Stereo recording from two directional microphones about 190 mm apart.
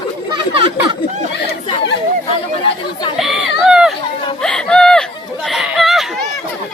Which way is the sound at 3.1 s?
Centre (ahead or behind).